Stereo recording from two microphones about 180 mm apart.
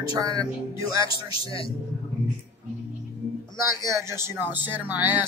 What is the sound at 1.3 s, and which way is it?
Speech, 30° left (ahead or behind).